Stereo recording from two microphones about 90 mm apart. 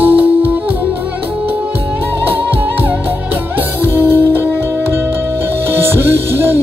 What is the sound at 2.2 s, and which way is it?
Music, 20° right (ahead or behind).